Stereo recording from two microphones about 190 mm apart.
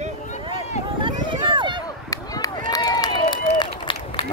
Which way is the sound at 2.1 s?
20° left (ahead or behind).